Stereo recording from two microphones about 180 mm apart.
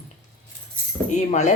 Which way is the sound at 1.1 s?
40° left (ahead or behind).